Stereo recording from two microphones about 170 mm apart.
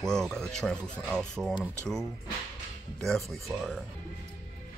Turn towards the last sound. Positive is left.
turn(degrees=0)  # may be behind; listen again after turning